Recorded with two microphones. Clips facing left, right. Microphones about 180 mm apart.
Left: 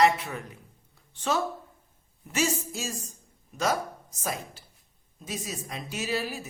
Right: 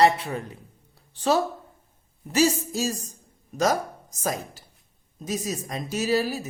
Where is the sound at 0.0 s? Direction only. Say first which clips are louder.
Right 3 dB; 35° right (ahead or behind).